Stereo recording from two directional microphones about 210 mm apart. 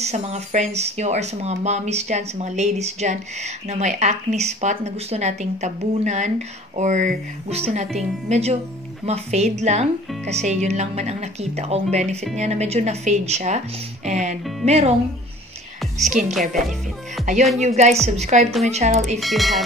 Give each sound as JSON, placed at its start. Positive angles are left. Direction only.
{"t": 0.0, "sound": "speech", "side_deg": -30}
{"t": 17.6, "sound": "speech", "side_deg": -30}
{"t": 19.1, "sound": "speech", "side_deg": 0}